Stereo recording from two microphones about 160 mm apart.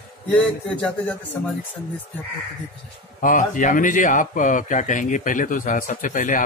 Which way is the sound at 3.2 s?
55° left (ahead or behind).